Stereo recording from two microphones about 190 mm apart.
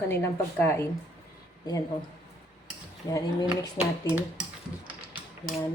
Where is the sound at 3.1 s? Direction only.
20° left (ahead or behind).